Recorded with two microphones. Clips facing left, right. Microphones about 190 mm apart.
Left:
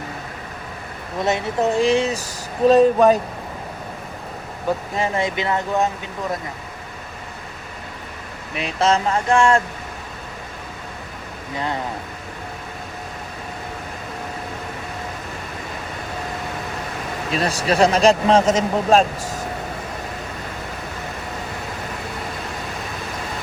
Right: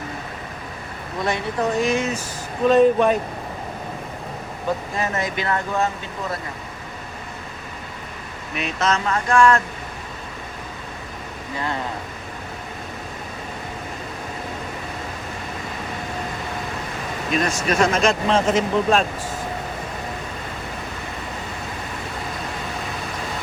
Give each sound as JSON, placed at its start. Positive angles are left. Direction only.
{"t": 1.2, "sound": "speech", "side_deg": 25}
{"t": 4.9, "sound": "speech", "side_deg": 20}
{"t": 8.5, "sound": "speech", "side_deg": 30}
{"t": 17.3, "sound": "speech", "side_deg": 35}